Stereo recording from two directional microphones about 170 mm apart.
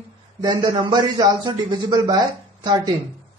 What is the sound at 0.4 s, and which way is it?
Speech, 25° right (ahead or behind).